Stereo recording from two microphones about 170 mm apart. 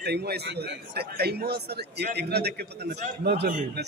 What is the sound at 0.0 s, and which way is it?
A man's voice, 75° right (ahead or behind).